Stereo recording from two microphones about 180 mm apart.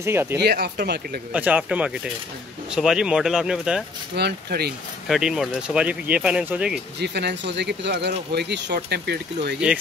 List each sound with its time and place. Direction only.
0.0 s speech: 15° right (ahead or behind)
0.4 s speech: 65° right (ahead or behind)
1.3 s speech: 10° right (ahead or behind)
4.1 s speech: 65° right (ahead or behind)
5.0 s speech: centre (ahead or behind)
7.0 s speech: 70° right (ahead or behind)